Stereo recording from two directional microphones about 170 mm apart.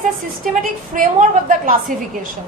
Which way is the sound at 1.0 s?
50° right (ahead or behind).